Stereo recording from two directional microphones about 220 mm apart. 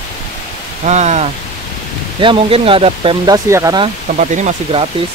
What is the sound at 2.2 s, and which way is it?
Speech, 25° right (ahead or behind).